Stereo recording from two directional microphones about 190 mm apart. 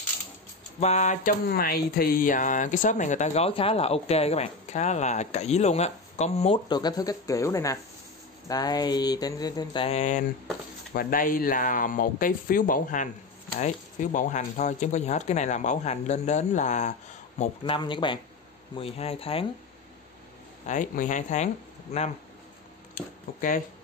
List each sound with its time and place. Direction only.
0.7 s speech: 35° left (ahead or behind)
1.5 s speech: 55° left (ahead or behind); by 6.6 s 35° left (ahead or behind)
6.7 s speech: 20° left (ahead or behind)
9.8 s speech: 40° left (ahead or behind)
14.1 s speech: 40° left (ahead or behind)
17.4 s speech: 25° left (ahead or behind)
20.6 s speech: 40° left (ahead or behind)
22.9 s speech: 45° left (ahead or behind)